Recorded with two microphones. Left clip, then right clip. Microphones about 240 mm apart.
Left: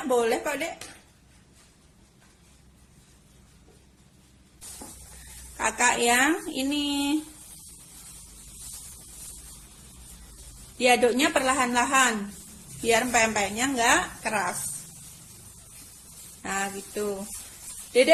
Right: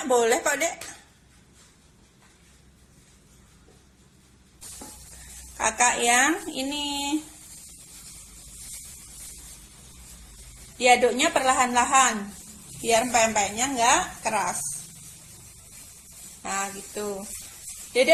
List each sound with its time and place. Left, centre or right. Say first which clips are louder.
0.1 s speech: right 3 dB; centre
5.5 s a woman's voice: right 1 dB; left
10.8 s a woman's voice: right 2 dB; left
16.4 s a woman's voice: even; left